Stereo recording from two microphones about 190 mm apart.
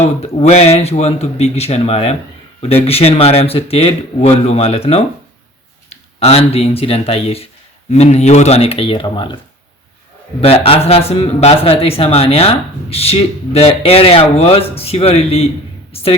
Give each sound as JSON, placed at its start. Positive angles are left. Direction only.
{"t": 0.0, "sound": "speech", "side_deg": 35}
{"t": 10.4, "sound": "speech", "side_deg": 30}